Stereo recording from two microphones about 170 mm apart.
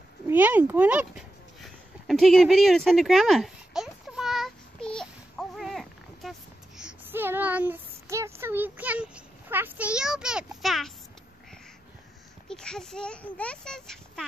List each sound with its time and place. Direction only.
0.3 s a sound: 10° right (ahead or behind)
6.8 s speech: 10° right (ahead or behind)
12.4 s a child's voice: 5° left (ahead or behind)